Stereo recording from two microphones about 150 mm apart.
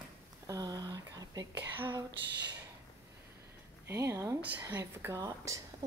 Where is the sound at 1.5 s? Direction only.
15° right (ahead or behind).